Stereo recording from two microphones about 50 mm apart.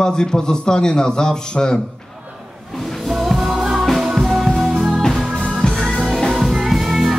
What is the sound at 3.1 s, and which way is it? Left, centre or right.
Music, centre.